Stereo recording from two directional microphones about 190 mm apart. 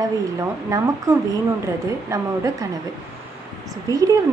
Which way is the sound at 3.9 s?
20° right (ahead or behind).